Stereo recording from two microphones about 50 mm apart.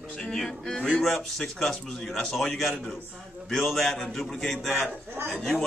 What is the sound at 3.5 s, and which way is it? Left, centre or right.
A man's voice, centre.